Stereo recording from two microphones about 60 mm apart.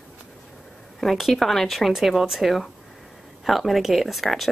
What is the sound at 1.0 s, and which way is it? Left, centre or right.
Speech, centre.